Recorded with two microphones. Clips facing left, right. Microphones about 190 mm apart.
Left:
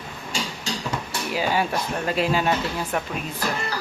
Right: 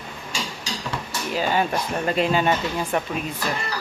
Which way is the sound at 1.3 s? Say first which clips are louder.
Right 1 dB; 10° left (ahead or behind).